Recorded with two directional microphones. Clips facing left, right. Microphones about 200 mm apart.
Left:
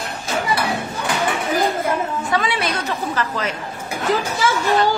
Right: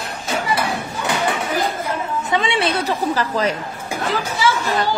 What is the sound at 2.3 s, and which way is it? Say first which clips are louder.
A woman's voice: right 3 dB; 25° right (ahead or behind).